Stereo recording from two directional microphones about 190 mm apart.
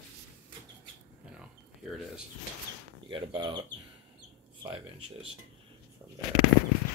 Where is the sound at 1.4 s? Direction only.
Centre (ahead or behind).